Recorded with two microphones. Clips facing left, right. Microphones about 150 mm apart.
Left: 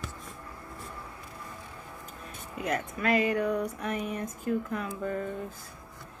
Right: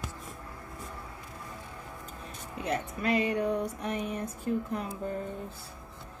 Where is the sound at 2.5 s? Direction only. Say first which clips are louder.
Left 1 dB; 30° right (ahead or behind).